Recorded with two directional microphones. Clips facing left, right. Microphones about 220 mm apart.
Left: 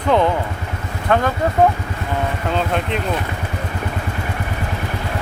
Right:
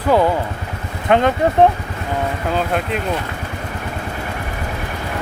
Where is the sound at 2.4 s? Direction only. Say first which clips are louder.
Even; 5° right (ahead or behind).